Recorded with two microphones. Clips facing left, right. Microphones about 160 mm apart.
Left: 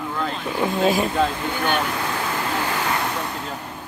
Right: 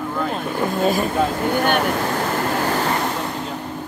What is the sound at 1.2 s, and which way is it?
Vehicle, 50° right (ahead or behind).